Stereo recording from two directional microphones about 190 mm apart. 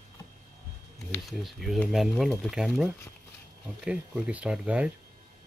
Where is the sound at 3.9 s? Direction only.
5° right (ahead or behind).